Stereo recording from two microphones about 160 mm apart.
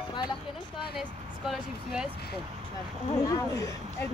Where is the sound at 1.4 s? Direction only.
5° right (ahead or behind).